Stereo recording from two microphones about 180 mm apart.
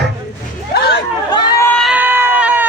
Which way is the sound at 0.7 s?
65° left (ahead or behind).